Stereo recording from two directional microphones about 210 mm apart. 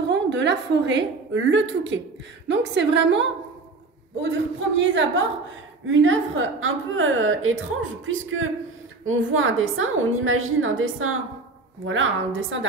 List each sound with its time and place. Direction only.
0.1 s a woman's voice: 55° right (ahead or behind)
4.7 s a woman's voice: 65° right (ahead or behind)